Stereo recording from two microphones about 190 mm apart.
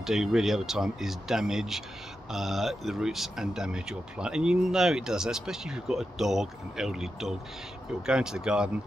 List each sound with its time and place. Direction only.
0.0 s speech: centre (ahead or behind)